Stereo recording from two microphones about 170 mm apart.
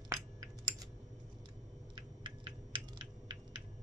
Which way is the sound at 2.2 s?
30° right (ahead or behind).